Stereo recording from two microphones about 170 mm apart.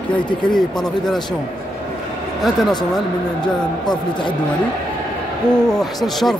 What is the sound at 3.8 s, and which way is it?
Speech, 25° left (ahead or behind).